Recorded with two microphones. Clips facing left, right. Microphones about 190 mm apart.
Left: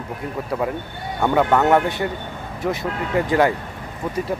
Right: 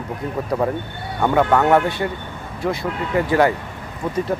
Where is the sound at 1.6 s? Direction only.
20° left (ahead or behind).